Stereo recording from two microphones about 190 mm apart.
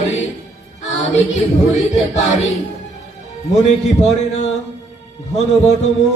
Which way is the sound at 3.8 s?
35° left (ahead or behind).